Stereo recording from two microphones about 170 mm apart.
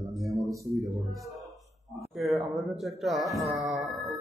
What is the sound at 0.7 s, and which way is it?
Speech, centre (ahead or behind).